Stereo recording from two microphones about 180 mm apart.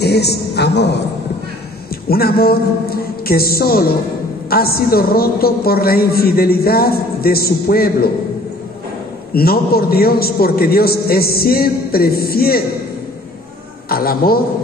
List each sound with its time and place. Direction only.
0.0 s a man's voice: 65° left (ahead or behind)
2.0 s a man's voice: 55° left (ahead or behind)
9.3 s a man's voice: 55° left (ahead or behind)
13.8 s a man's voice: 55° left (ahead or behind)